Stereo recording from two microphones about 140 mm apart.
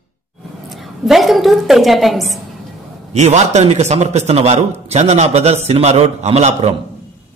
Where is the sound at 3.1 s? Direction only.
55° right (ahead or behind).